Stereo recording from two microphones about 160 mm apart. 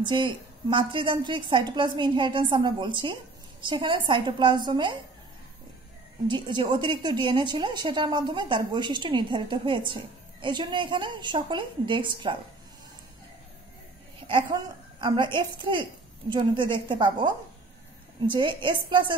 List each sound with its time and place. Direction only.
0.0 s a woman's voice: 30° right (ahead or behind)
6.2 s a woman's voice: 30° right (ahead or behind)
14.2 s a woman's voice: 30° right (ahead or behind)